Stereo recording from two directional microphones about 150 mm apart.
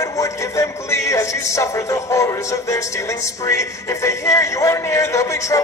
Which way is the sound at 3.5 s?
20° left (ahead or behind).